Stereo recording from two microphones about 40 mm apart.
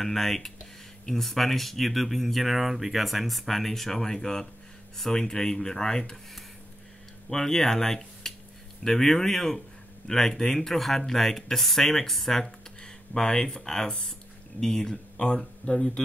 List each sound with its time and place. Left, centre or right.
0.0 s speech: centre
7.2 s speech: centre
15.6 s speech: left